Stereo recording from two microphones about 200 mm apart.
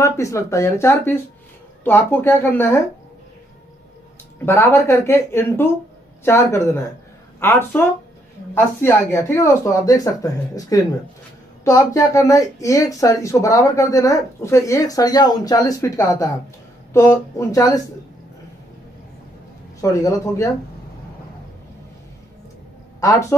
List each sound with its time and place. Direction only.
0.0 s speech: 15° left (ahead or behind)
4.5 s speech: 10° left (ahead or behind)
19.8 s speech: 15° left (ahead or behind)